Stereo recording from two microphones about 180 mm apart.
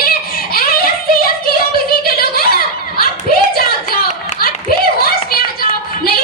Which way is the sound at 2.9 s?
55° left (ahead or behind).